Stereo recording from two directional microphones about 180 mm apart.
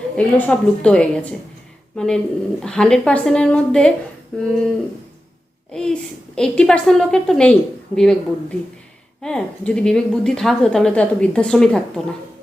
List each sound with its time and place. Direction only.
0.2 s a woman's voice: 10° left (ahead or behind)
5.7 s a woman's voice: 5° left (ahead or behind)